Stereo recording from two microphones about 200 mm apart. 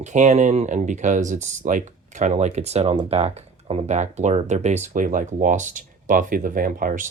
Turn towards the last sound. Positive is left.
turn(degrees=-45)  # may be behind; listen again after turning